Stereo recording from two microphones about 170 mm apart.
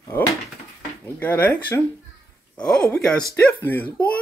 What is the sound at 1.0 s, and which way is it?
Speech, 10° left (ahead or behind).